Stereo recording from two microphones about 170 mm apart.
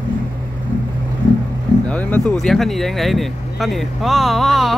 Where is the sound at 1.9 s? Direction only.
5° left (ahead or behind).